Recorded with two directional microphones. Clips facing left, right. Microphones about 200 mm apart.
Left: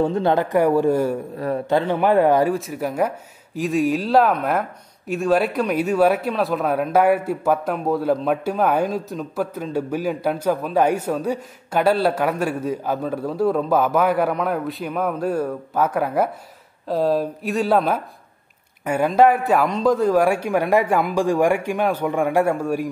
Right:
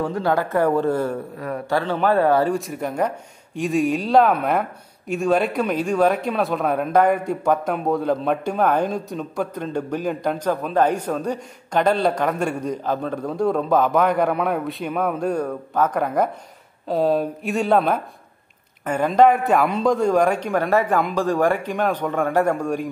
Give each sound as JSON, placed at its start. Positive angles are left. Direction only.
{"t": 0.0, "sound": "a man's voice", "side_deg": 25}
{"t": 1.4, "sound": "a man's voice", "side_deg": 25}
{"t": 2.5, "sound": "a man's voice", "side_deg": 0}